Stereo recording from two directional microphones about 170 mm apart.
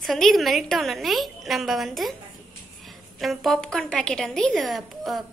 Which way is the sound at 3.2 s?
Centre (ahead or behind).